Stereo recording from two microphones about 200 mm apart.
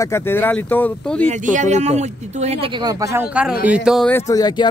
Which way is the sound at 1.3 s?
35° right (ahead or behind).